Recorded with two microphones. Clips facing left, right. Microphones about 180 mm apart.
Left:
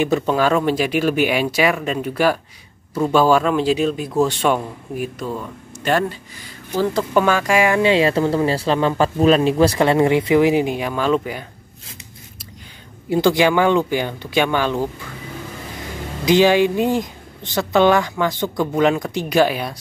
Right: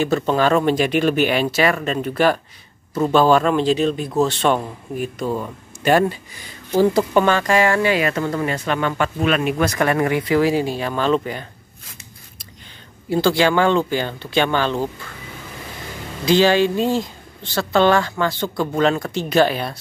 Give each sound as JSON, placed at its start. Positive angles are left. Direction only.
{"t": 0.3, "sound": "speech", "side_deg": 5}
{"t": 5.3, "sound": "speech", "side_deg": -15}
{"t": 7.2, "sound": "speech", "side_deg": 5}
{"t": 13.1, "sound": "speech", "side_deg": 15}
{"t": 16.3, "sound": "speech", "side_deg": 15}